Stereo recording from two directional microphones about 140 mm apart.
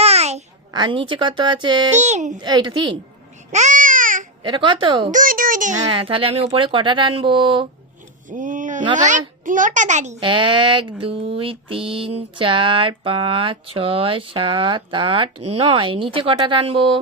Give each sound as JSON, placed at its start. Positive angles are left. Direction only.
{"t": 0.0, "sound": "a sound", "side_deg": -50}
{"t": 0.7, "sound": "speech", "side_deg": -35}
{"t": 1.9, "sound": "a child's voice", "side_deg": -55}
{"t": 2.4, "sound": "speech", "side_deg": -35}
{"t": 3.5, "sound": "a sound", "side_deg": -60}
{"t": 4.4, "sound": "speech", "side_deg": -35}
{"t": 5.1, "sound": "a child's voice", "side_deg": -80}
{"t": 5.7, "sound": "speech", "side_deg": -40}
{"t": 8.3, "sound": "a sound", "side_deg": -70}
{"t": 9.0, "sound": "a child's voice", "side_deg": -65}
{"t": 10.2, "sound": "speech", "side_deg": -35}